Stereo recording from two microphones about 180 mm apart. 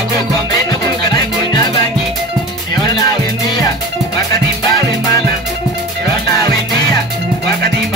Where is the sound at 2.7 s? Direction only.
20° left (ahead or behind).